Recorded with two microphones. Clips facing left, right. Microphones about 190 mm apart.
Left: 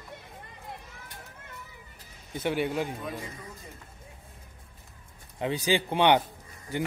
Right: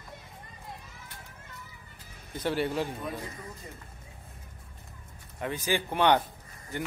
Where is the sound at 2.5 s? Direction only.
15° left (ahead or behind).